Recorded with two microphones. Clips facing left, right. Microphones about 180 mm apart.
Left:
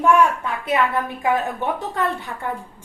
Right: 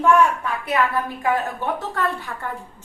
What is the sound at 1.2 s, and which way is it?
Speech, 20° left (ahead or behind).